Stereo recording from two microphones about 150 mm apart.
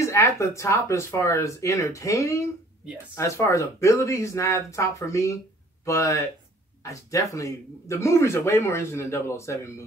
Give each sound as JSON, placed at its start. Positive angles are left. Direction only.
{"t": 0.0, "sound": "speech", "side_deg": 20}